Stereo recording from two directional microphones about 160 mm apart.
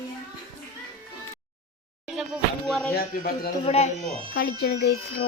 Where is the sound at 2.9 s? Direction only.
70° left (ahead or behind).